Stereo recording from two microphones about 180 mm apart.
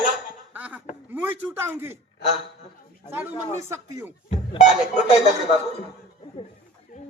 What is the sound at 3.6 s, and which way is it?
Speech, 15° right (ahead or behind).